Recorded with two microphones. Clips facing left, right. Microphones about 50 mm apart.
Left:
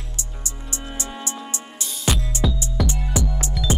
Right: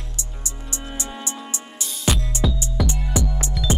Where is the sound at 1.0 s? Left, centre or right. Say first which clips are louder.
Left 1 dB; right.